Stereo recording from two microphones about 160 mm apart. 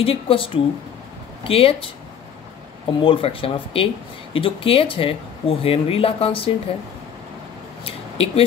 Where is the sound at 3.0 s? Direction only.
35° left (ahead or behind).